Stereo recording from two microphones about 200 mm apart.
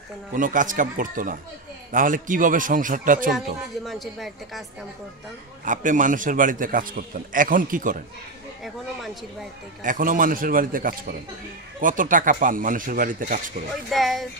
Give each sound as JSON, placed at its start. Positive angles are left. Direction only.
{"t": 0.3, "sound": "a man's voice", "side_deg": -40}
{"t": 3.8, "sound": "a woman's voice", "side_deg": 0}
{"t": 5.7, "sound": "a man's voice", "side_deg": -40}
{"t": 9.8, "sound": "speech", "side_deg": -40}
{"t": 13.8, "sound": "a woman's voice", "side_deg": 0}